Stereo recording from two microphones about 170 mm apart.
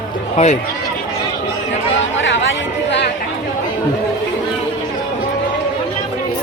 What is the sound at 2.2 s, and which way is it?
Chatter, 90° left.